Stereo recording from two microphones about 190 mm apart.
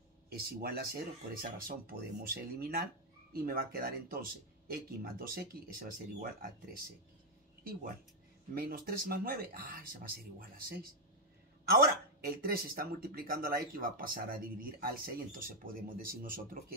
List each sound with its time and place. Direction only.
0.3 s speech: 55° right (ahead or behind)
8.5 s speech: 50° right (ahead or behind)